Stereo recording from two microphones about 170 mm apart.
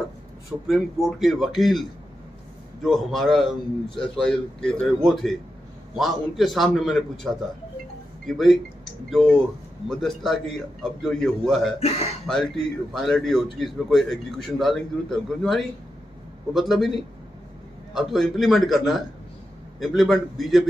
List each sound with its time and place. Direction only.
0.7 s a man's voice: centre (ahead or behind)
11.8 s speech: 40° left (ahead or behind)
12.3 s a man's voice: 5° left (ahead or behind)